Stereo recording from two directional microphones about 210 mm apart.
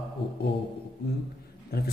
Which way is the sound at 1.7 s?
50° left (ahead or behind).